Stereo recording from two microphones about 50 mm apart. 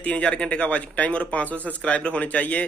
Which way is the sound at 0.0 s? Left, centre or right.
Left.